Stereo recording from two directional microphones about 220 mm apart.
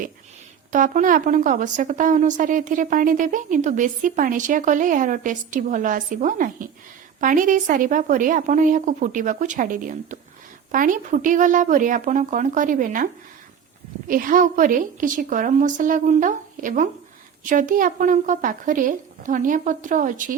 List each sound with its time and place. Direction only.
0.7 s a woman's voice: 35° right (ahead or behind)
14.1 s a woman's voice: 40° right (ahead or behind)